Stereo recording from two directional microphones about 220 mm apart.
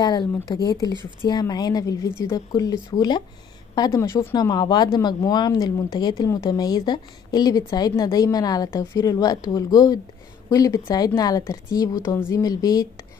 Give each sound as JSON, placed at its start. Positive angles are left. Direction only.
{"t": 0.0, "sound": "speech", "side_deg": 20}